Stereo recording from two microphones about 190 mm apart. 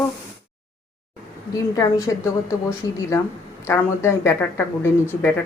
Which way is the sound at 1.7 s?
15° left (ahead or behind).